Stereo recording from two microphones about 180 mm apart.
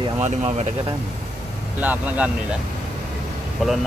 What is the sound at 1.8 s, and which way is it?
Speech, 10° right (ahead or behind).